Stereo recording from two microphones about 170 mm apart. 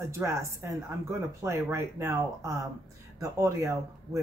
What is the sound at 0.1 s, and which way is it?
Speech, 15° right (ahead or behind).